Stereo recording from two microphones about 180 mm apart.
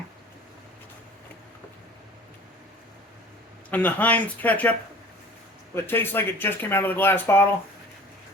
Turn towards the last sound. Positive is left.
turn(degrees=10)  # may be behind; listen again after turning